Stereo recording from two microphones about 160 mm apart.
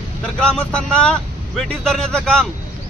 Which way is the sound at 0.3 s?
5° left (ahead or behind).